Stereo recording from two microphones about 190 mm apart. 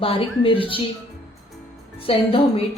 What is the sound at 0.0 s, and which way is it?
Speech, 30° left (ahead or behind).